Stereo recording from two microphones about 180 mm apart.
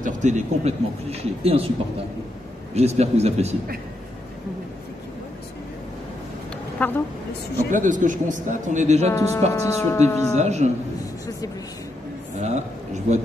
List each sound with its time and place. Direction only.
0.0 s speech: 40° right (ahead or behind)
2.7 s speech: 35° right (ahead or behind)
6.8 s speech: 10° left (ahead or behind)
7.7 s speech: 45° right (ahead or behind)
9.1 s speech: 15° left (ahead or behind)
10.3 s speech: 40° right (ahead or behind)
12.4 s speech: 40° right (ahead or behind)